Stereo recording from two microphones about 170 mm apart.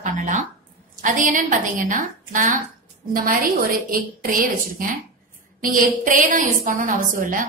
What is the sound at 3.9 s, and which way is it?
Speech, 55° right (ahead or behind).